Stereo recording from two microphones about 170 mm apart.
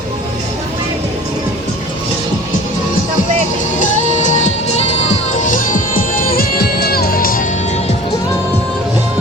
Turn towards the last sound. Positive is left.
turn(degrees=45)  # may be behind; listen again after turning